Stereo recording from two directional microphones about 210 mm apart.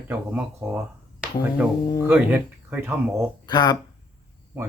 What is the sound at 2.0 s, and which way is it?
Speech, 10° right (ahead or behind).